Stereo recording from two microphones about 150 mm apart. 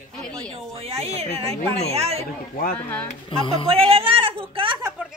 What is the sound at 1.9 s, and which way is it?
Speech, 45° right (ahead or behind).